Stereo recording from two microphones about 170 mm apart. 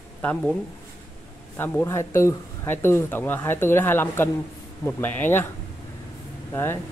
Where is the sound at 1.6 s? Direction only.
15° left (ahead or behind).